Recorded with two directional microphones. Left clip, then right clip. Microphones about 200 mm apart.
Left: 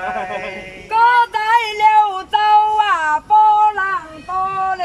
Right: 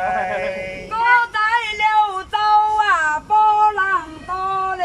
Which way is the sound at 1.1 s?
35° left (ahead or behind).